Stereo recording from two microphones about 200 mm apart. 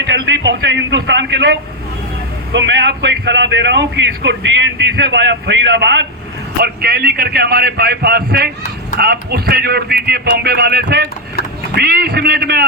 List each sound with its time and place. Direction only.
0.0 s a man's voice: 60° right (ahead or behind)
6.6 s speech: 50° right (ahead or behind)